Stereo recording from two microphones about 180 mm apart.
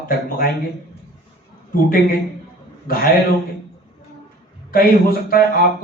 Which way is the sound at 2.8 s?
55° left (ahead or behind).